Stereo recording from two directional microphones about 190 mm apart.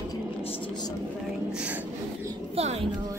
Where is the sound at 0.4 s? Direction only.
25° left (ahead or behind).